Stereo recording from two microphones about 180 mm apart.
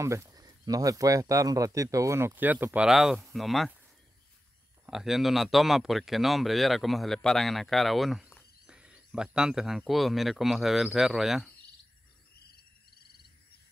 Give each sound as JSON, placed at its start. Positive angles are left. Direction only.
{"t": 0.0, "sound": "speech", "side_deg": -15}
{"t": 4.8, "sound": "speech", "side_deg": 0}
{"t": 12.4, "sound": "frog", "side_deg": 60}